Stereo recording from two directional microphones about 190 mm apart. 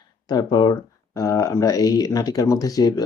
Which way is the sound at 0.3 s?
20° left (ahead or behind).